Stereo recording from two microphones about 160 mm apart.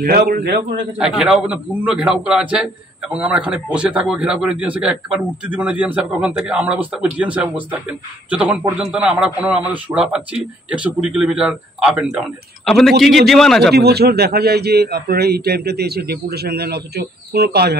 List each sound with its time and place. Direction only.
0.0 s a man's voice: 70° right (ahead or behind)
0.9 s a man's voice: 5° right (ahead or behind)
13.7 s a man's voice: 85° right